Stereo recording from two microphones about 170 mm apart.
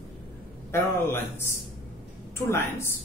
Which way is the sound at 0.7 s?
15° left (ahead or behind).